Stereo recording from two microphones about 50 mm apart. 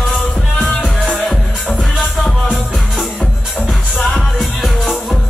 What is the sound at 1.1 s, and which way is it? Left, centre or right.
Music, centre.